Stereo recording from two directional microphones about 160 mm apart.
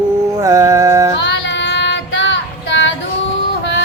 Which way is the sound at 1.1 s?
90° left.